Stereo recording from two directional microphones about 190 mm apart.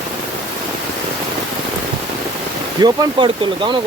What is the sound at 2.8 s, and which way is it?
Speech, 25° right (ahead or behind).